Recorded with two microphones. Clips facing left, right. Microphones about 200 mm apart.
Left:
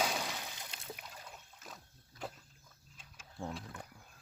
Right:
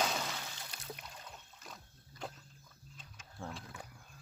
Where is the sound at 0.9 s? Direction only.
5° left (ahead or behind).